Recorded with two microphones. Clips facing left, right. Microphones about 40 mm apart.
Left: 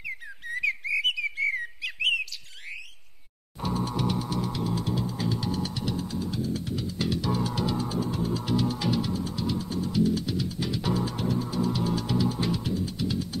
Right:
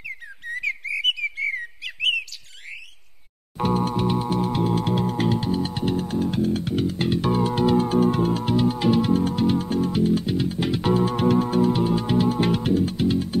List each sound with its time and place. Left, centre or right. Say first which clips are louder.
0.5 s whistle: right 1 dB; centre
1.5 s bird: right 1 dB; centre
3.5 s music: right 7 dB; right
5.5 s music: right 7 dB; right
8.5 s music: right 7 dB; right